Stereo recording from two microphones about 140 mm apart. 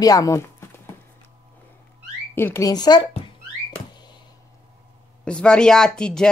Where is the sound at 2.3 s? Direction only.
20° left (ahead or behind).